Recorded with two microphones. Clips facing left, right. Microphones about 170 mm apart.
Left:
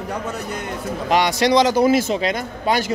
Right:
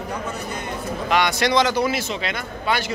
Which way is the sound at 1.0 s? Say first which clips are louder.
Left 3 dB; 35° left (ahead or behind).